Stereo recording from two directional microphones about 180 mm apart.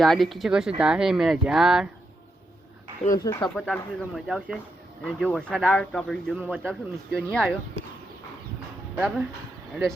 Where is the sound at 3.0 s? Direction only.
35° left (ahead or behind).